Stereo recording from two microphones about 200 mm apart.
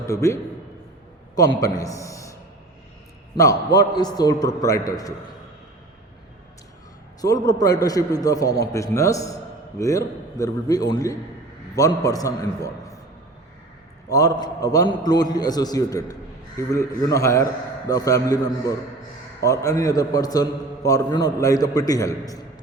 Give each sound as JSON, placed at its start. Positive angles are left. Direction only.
{"t": 0.0, "sound": "a man's voice", "side_deg": 15}
{"t": 1.6, "sound": "a man's voice", "side_deg": 15}
{"t": 7.2, "sound": "a man's voice", "side_deg": 20}
{"t": 14.1, "sound": "a man's voice", "side_deg": 20}